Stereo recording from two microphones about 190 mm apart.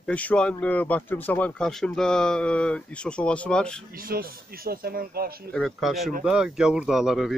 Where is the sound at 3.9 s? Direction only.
50° right (ahead or behind).